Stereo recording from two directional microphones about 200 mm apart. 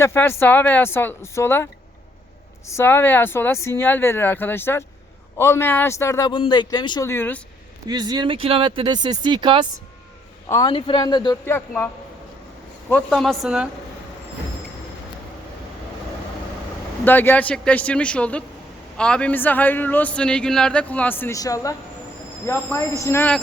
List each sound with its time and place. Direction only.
0.0 s speech: 10° left (ahead or behind)
7.9 s speech: 20° right (ahead or behind)
10.5 s speech: 20° left (ahead or behind)
12.9 s a woman's voice: centre (ahead or behind)
17.1 s speech: 10° left (ahead or behind)